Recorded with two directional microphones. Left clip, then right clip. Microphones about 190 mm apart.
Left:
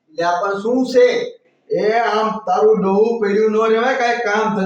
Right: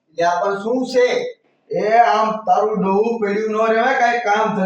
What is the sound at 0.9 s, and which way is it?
Speech, 10° left (ahead or behind).